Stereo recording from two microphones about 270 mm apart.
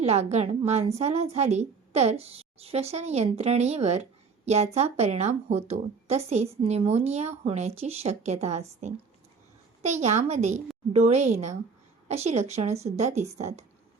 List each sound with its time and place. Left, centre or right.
0.0 s a woman's voice: right